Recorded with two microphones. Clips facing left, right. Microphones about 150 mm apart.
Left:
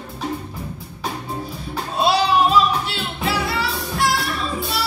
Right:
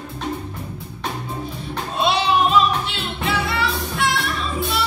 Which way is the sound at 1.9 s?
40° left (ahead or behind).